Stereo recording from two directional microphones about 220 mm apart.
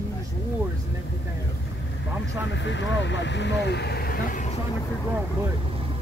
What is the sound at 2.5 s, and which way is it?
Speech, 55° left (ahead or behind).